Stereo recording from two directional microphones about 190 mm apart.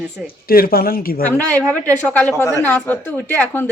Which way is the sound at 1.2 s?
10° left (ahead or behind).